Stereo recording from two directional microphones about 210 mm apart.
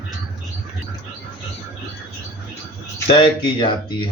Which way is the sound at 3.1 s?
25° left (ahead or behind).